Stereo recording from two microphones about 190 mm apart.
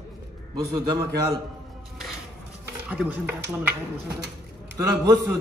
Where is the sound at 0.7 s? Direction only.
20° right (ahead or behind).